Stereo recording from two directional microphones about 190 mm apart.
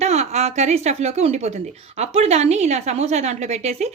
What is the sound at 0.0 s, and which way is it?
Speech, 35° right (ahead or behind).